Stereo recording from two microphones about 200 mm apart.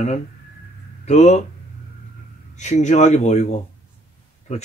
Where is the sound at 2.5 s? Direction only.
35° left (ahead or behind).